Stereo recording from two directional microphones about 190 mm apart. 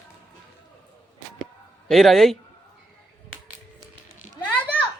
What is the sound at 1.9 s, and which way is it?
Speech, centre (ahead or behind).